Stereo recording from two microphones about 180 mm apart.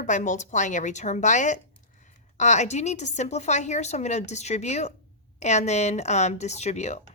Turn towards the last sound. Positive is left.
turn(degrees=40)  # may be behind; listen again after turning